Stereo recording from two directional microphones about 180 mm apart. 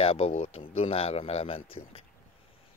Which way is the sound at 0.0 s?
35° left (ahead or behind).